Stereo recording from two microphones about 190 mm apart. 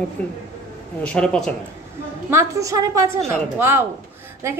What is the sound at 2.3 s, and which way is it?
Speech, 15° right (ahead or behind).